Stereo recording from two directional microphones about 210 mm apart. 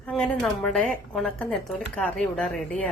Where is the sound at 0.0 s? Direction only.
5° left (ahead or behind).